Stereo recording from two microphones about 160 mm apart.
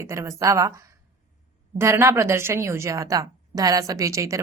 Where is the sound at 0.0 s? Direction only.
20° right (ahead or behind).